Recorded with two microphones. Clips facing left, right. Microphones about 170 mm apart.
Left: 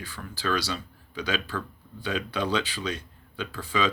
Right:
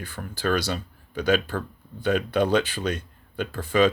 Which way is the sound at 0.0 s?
55° right (ahead or behind).